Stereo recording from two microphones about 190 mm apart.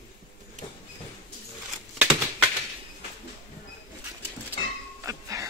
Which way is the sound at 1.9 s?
10° right (ahead or behind).